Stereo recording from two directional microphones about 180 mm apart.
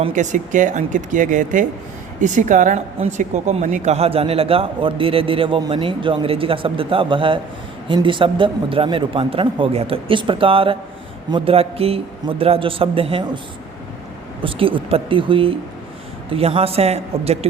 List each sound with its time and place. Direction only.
0.1 s speech: 45° right (ahead or behind)
14.4 s speech: 30° right (ahead or behind)